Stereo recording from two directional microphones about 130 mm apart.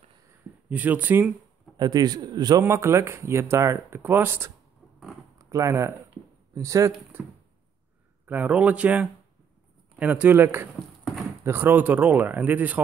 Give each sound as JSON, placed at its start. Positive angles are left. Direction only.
{"t": 0.7, "sound": "speech", "side_deg": -10}
{"t": 1.8, "sound": "a man's voice", "side_deg": -30}
{"t": 2.6, "sound": "speech", "side_deg": -20}
{"t": 8.3, "sound": "speech", "side_deg": -10}